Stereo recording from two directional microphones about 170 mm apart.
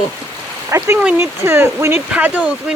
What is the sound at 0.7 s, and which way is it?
Speech, 20° right (ahead or behind).